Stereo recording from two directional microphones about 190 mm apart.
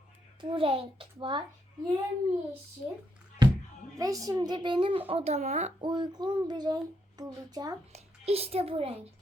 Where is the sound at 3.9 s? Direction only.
20° right (ahead or behind); by 5.7 s 35° right (ahead or behind).